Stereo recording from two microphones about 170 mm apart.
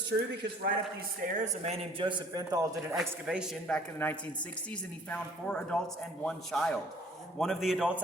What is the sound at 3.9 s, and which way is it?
A man's voice, 10° left (ahead or behind).